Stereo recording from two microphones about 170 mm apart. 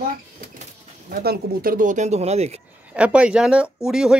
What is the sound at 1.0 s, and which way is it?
Speech, 60° right (ahead or behind).